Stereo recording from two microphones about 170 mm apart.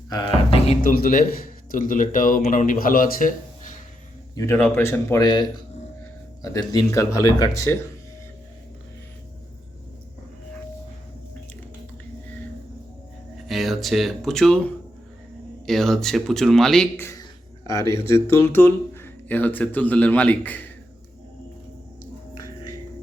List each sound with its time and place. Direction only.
0.1 s speech: 30° left (ahead or behind)
0.8 s a man's voice: 55° left (ahead or behind)
4.4 s speech: 15° left (ahead or behind)
6.9 s speech: 20° left (ahead or behind)
13.3 s a man's voice: centre (ahead or behind)
17.0 s speech: 20° left (ahead or behind)